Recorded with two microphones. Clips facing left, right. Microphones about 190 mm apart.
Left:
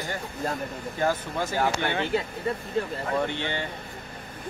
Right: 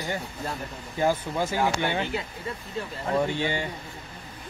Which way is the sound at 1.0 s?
10° right (ahead or behind).